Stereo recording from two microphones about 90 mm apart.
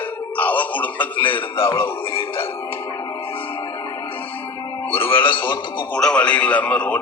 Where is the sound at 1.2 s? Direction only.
70° left (ahead or behind).